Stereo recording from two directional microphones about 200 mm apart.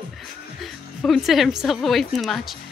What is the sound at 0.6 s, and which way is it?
A woman's voice, centre (ahead or behind).